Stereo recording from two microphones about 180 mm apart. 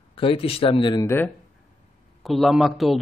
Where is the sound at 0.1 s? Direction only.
30° left (ahead or behind).